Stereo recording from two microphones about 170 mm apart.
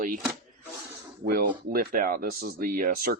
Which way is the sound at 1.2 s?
60° right (ahead or behind).